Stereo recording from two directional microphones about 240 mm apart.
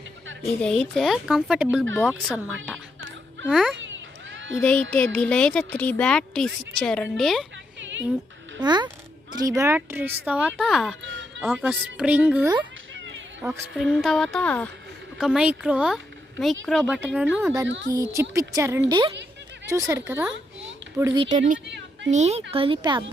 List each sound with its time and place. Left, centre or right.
0.6 s speech: centre
4.3 s a sound: right
4.6 s speech: centre
8.5 s speech: centre